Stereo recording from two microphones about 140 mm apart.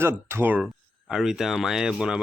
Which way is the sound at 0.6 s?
5° right (ahead or behind).